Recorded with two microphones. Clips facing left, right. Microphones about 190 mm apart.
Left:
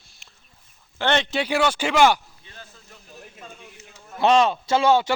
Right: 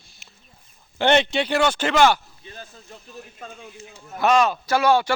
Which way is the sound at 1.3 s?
5° left (ahead or behind).